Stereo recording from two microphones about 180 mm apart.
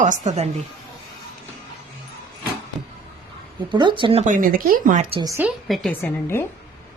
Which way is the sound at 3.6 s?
25° right (ahead or behind).